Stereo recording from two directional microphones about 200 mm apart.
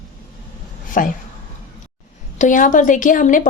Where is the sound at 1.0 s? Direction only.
40° left (ahead or behind).